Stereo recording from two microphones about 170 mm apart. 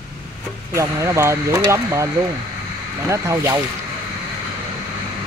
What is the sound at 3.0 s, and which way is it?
Speech, 15° right (ahead or behind).